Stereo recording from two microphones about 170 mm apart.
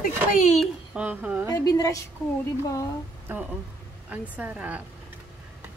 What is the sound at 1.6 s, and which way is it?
Speech, 20° left (ahead or behind).